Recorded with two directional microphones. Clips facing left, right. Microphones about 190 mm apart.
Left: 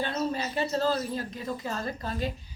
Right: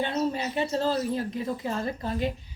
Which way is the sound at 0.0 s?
20° right (ahead or behind).